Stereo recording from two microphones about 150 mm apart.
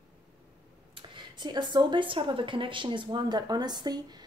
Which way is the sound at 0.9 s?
30° right (ahead or behind).